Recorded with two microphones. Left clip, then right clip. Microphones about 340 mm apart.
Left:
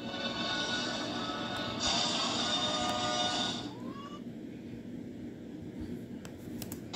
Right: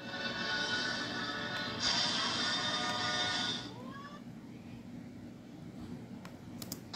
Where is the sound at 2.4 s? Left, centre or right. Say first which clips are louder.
Left 2 dB; left.